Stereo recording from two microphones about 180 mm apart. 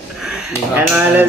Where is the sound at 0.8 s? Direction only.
10° right (ahead or behind).